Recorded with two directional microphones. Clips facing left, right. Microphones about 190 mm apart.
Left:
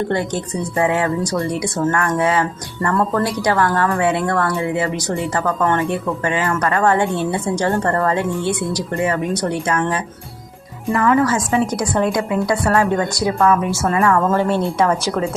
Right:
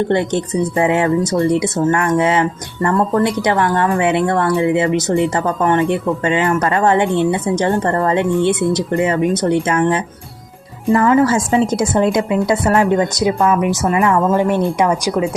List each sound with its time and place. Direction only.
0.1 s a woman's voice: 25° right (ahead or behind)